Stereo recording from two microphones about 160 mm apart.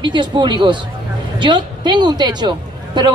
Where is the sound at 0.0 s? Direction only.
30° right (ahead or behind).